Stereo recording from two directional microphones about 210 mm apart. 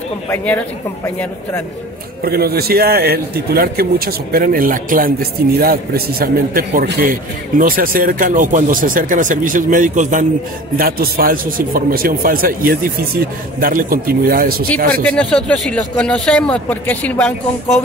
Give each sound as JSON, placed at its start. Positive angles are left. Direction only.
{"t": 2.2, "sound": "speech", "side_deg": -50}
{"t": 15.0, "sound": "a man's voice", "side_deg": 5}